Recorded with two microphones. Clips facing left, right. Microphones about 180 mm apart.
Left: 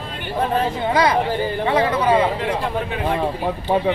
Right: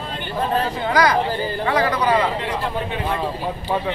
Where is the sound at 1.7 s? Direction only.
25° left (ahead or behind).